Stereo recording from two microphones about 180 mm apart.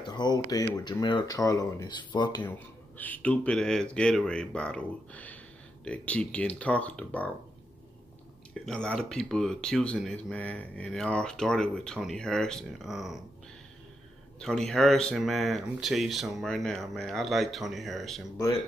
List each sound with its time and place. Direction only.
0.0 s speech: 25° left (ahead or behind)
2.4 s speech: 10° left (ahead or behind)
8.5 s speech: 5° left (ahead or behind)
14.4 s speech: centre (ahead or behind)